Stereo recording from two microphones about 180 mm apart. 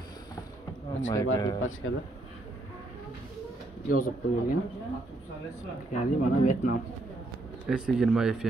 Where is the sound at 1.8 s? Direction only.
90° left.